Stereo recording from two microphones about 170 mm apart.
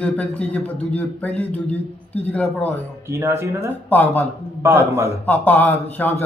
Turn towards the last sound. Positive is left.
turn(degrees=10)  # may be behind; listen again after turning